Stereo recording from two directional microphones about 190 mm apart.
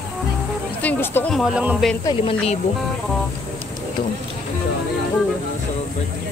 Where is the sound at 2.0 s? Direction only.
30° left (ahead or behind).